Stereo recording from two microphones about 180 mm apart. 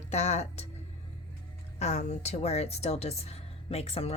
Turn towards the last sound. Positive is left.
turn(degrees=35)  # may be behind; listen again after turning